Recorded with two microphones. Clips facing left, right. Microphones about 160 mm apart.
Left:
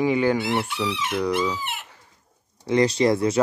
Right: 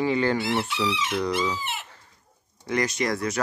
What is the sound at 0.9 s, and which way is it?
Speech, 55° left (ahead or behind).